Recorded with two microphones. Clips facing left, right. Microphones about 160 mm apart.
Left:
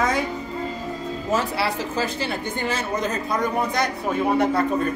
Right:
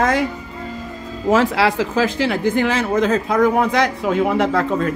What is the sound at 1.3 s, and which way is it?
Speech, 90° right.